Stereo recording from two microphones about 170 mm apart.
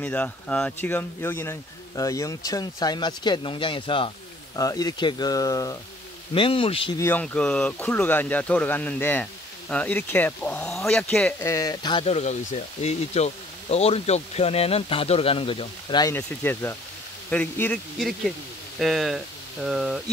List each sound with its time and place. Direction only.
0.0 s speech: 5° left (ahead or behind)
6.3 s speech: 30° left (ahead or behind)
7.0 s speech: 10° left (ahead or behind); by 16.1 s 30° left (ahead or behind)
16.1 s speech: 15° left (ahead or behind)